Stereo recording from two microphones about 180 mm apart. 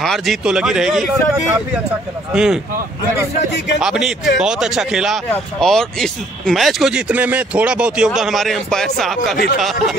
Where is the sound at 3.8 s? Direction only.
5° right (ahead or behind).